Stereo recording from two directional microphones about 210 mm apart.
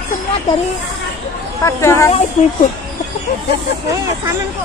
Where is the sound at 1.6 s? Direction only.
15° left (ahead or behind).